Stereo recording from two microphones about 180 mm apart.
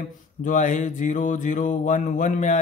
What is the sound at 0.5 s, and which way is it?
Mantra, 45° left (ahead or behind).